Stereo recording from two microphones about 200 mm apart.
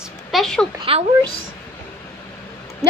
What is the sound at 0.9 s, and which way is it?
Speech, 25° right (ahead or behind).